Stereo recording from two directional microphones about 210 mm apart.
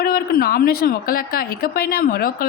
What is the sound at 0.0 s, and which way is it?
A woman's voice, 45° left (ahead or behind).